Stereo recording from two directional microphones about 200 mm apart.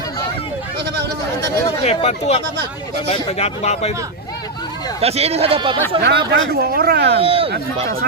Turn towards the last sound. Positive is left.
turn(degrees=-30)  # may be behind; listen again after turning